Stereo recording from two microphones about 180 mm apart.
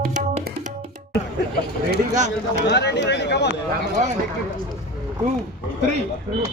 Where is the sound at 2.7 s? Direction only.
70° left (ahead or behind).